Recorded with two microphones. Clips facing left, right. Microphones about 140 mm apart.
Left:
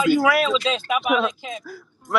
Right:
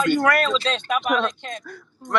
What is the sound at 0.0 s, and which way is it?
Speech, 5° left (ahead or behind).